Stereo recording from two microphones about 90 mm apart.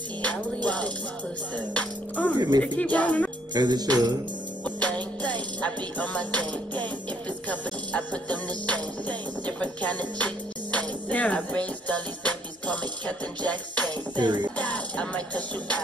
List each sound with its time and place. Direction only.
0.7 s music: 15° left (ahead or behind)
2.3 s music: 50° right (ahead or behind)
2.8 s music: 15° left (ahead or behind)
3.5 s music: 50° right (ahead or behind)
4.6 s music: 15° left (ahead or behind)
14.1 s music: 55° right (ahead or behind)
14.6 s music: 15° left (ahead or behind)